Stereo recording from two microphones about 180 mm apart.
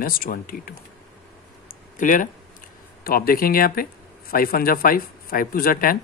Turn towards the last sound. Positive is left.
turn(degrees=50)  # may be behind; listen again after turning